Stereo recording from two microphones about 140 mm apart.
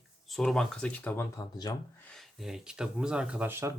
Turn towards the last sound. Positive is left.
turn(degrees=-15)  # may be behind; listen again after turning